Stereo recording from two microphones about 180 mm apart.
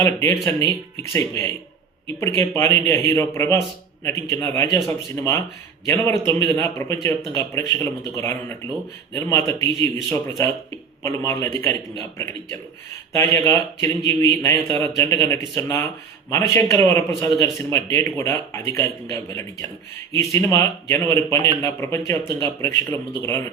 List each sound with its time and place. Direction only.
0.0 s a man's voice: 15° left (ahead or behind)